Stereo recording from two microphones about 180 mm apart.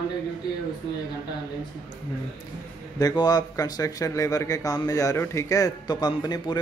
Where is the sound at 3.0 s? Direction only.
20° left (ahead or behind).